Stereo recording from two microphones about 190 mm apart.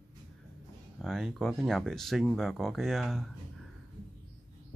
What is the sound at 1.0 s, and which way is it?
Speech, centre (ahead or behind).